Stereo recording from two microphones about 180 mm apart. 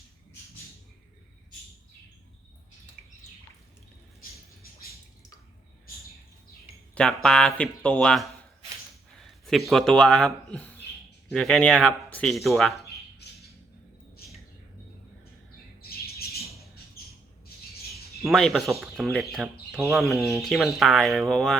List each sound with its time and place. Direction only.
6.9 s speech: 5° left (ahead or behind)
15.8 s squawk: 60° left (ahead or behind)
18.3 s speech: centre (ahead or behind)